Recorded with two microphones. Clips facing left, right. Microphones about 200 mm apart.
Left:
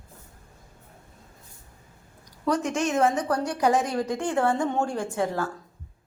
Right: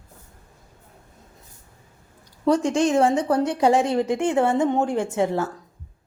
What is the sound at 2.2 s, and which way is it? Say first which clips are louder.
Speech: right 6 dB; 30° right (ahead or behind).